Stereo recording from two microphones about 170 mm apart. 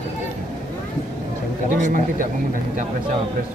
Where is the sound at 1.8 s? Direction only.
50° right (ahead or behind).